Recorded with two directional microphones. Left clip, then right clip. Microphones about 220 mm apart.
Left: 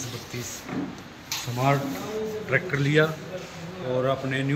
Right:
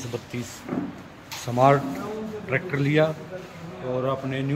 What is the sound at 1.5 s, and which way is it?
Speech, 15° right (ahead or behind).